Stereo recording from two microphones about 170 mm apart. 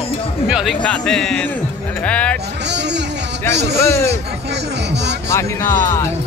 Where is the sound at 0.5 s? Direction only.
5° right (ahead or behind).